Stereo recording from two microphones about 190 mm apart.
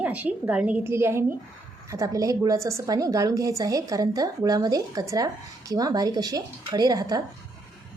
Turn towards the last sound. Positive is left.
turn(degrees=-20)  # may be behind; listen again after turning